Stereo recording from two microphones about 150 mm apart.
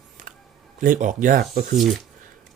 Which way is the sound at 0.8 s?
60° right (ahead or behind).